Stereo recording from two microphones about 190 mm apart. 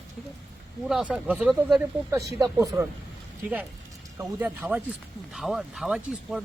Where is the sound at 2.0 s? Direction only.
15° right (ahead or behind).